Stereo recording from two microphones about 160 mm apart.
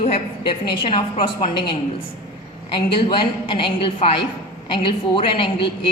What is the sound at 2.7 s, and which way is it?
A woman's voice, 30° left (ahead or behind).